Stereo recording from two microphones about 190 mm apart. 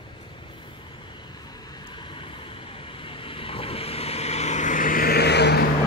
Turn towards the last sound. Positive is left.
turn(degrees=60)  # may be behind; listen again after turning